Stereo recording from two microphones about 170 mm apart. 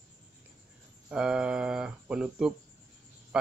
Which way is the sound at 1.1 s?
5° right (ahead or behind).